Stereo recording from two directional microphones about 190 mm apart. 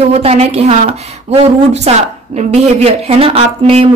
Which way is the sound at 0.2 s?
30° right (ahead or behind).